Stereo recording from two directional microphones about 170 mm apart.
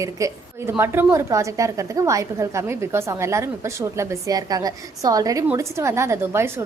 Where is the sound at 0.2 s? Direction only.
20° right (ahead or behind).